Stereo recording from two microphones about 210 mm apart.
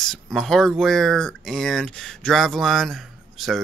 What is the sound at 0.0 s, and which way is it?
Speech, centre (ahead or behind).